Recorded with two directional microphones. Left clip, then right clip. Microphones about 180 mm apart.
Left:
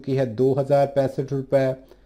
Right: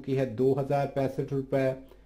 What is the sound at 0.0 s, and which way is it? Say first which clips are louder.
Speech: left 5 dB; 30° left (ahead or behind).